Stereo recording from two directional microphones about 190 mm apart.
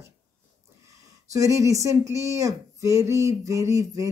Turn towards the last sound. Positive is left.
turn(degrees=-15)  # may be behind; listen again after turning